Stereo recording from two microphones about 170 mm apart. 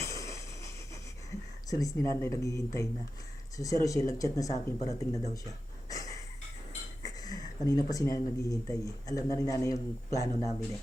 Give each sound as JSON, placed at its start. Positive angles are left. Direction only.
{"t": 0.0, "sound": "a sound", "side_deg": 20}
{"t": 1.3, "sound": "speech", "side_deg": 20}
{"t": 5.3, "sound": "gasp", "side_deg": 20}
{"t": 7.0, "sound": "speech", "side_deg": 20}